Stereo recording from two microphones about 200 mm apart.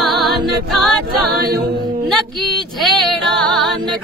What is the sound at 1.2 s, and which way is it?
A capella, 50° right (ahead or behind).